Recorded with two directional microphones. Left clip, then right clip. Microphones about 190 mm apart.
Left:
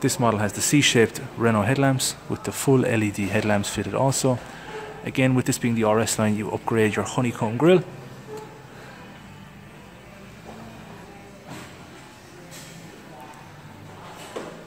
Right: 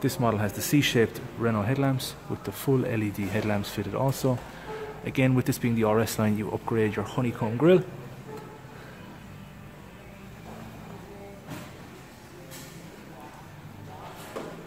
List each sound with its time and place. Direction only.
0.0 s speech: 15° left (ahead or behind)